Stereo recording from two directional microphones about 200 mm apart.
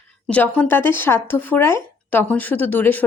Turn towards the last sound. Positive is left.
turn(degrees=10)  # may be behind; listen again after turning